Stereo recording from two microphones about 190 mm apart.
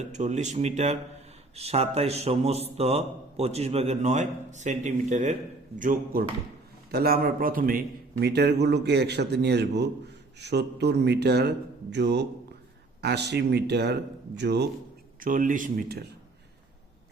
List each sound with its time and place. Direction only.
0.0 s a man's voice: 40° right (ahead or behind); by 14.7 s 60° right (ahead or behind)
15.2 s speech: 45° right (ahead or behind)